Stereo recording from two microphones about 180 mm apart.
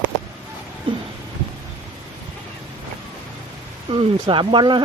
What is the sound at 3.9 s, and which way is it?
Speech, 25° right (ahead or behind).